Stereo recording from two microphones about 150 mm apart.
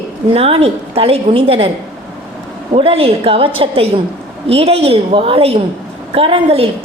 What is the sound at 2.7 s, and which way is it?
A woman's voice, 40° right (ahead or behind).